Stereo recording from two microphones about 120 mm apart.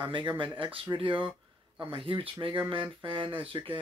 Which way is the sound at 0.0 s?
40° right (ahead or behind).